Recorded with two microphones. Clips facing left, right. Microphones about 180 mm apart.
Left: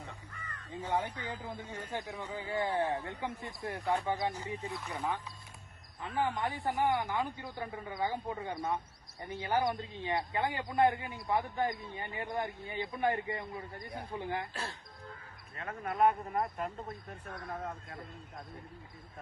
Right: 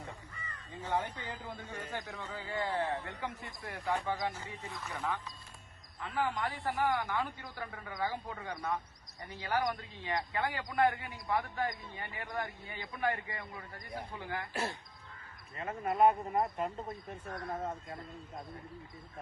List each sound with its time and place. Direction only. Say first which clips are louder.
0.8 s a man's voice: left 1 dB; 10° left (ahead or behind)
6.0 s speech: left 1 dB; 20° left (ahead or behind)
15.5 s speech: right 2 dB; 5° right (ahead or behind)